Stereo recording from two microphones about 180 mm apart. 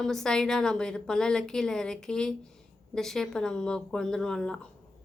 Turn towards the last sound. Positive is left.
turn(degrees=5)  # may be behind; listen again after turning